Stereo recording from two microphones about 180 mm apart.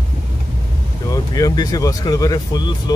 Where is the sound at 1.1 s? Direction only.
20° left (ahead or behind).